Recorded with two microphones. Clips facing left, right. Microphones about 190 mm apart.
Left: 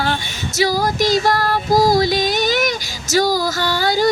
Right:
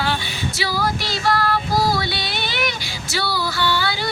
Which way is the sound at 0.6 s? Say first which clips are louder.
Left 8 dB; 40° left (ahead or behind).